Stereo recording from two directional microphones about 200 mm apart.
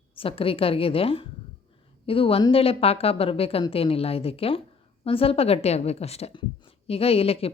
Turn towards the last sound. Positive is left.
turn(degrees=30)  # may be behind; listen again after turning